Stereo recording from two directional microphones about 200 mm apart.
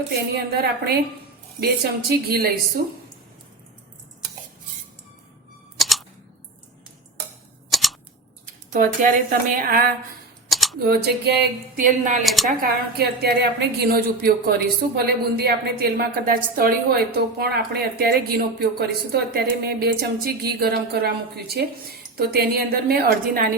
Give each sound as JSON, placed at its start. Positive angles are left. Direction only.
{"t": 0.3, "sound": "a woman's voice", "side_deg": -55}
{"t": 5.8, "sound": "a sound", "side_deg": 0}
{"t": 7.7, "sound": "scissors", "side_deg": 0}
{"t": 8.7, "sound": "a woman's voice", "side_deg": -40}
{"t": 10.5, "sound": "camera", "side_deg": 0}
{"t": 10.8, "sound": "a woman's voice", "side_deg": -55}
{"t": 12.2, "sound": "speech", "side_deg": 0}
{"t": 12.5, "sound": "a woman's voice", "side_deg": -50}